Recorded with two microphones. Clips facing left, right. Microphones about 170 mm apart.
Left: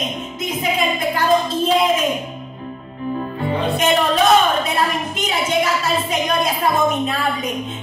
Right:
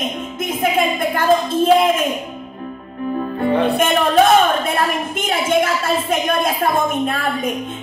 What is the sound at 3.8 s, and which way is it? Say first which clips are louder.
A woman's voice: even; 50° right (ahead or behind).